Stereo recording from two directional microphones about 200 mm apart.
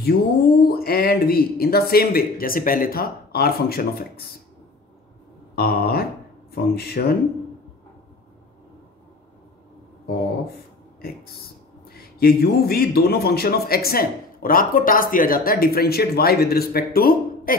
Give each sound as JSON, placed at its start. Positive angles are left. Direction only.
{"t": 0.0, "sound": "a man's voice", "side_deg": 50}
{"t": 5.6, "sound": "a man's voice", "side_deg": 50}
{"t": 11.0, "sound": "a man's voice", "side_deg": 50}